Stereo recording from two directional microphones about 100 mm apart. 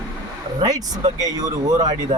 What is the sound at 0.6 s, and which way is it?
Speech, 40° right (ahead or behind).